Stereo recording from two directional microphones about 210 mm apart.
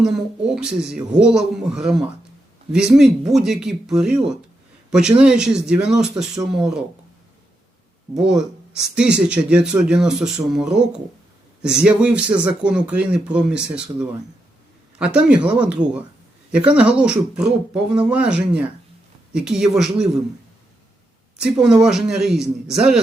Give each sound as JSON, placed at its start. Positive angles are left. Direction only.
{"t": 0.0, "sound": "a man's voice", "side_deg": 0}
{"t": 8.2, "sound": "a man's voice", "side_deg": -5}
{"t": 21.6, "sound": "a man's voice", "side_deg": -5}